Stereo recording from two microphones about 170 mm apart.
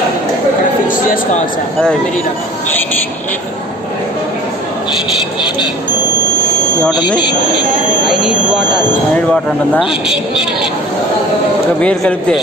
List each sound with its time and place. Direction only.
0.8 s a sound: 50° left (ahead or behind)
6.9 s speech: 25° left (ahead or behind)
8.1 s speech: centre (ahead or behind)
11.8 s speech: 5° left (ahead or behind)